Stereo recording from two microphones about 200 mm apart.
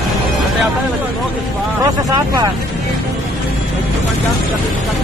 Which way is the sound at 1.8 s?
20° right (ahead or behind).